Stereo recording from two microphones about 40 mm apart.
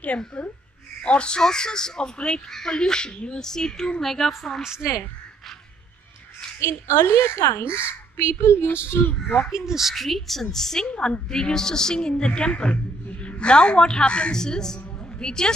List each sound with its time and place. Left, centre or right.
1.0 s a woman's voice: left; by 4.3 s centre
6.7 s speech: left
9.5 s speech: centre
9.9 s a woman's voice: centre; by 14.3 s left
14.3 s a woman's voice: centre